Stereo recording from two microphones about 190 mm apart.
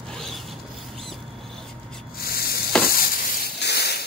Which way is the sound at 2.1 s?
55° left (ahead or behind).